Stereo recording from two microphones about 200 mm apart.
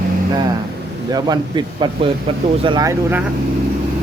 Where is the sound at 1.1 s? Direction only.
20° right (ahead or behind).